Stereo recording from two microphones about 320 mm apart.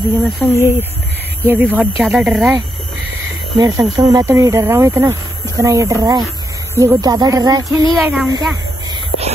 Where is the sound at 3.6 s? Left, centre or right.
Centre.